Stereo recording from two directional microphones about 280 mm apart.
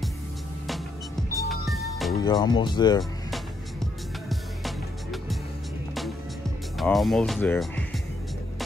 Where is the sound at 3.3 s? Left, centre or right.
Centre.